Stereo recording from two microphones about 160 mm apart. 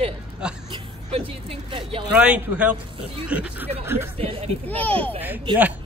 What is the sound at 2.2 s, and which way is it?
Speech, 10° right (ahead or behind).